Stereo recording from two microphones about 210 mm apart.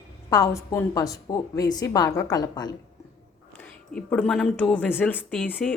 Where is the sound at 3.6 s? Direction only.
5° left (ahead or behind).